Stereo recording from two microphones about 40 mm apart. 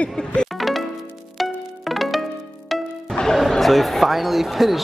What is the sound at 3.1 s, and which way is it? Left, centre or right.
Music, centre.